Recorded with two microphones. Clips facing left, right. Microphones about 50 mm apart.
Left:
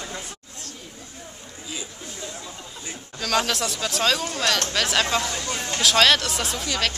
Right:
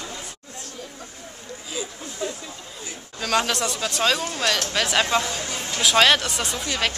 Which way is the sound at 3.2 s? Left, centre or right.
Centre.